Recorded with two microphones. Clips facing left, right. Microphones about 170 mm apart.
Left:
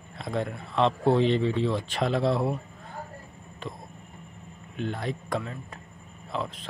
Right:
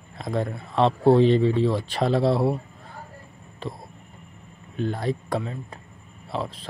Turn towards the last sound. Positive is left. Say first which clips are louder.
# right 2 dB
turn(degrees=-35)  # may be behind; listen again after turning